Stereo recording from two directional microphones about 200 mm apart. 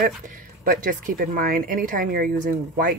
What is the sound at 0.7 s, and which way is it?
Speech, 40° right (ahead or behind).